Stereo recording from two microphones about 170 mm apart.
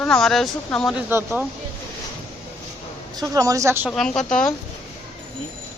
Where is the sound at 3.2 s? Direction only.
20° right (ahead or behind).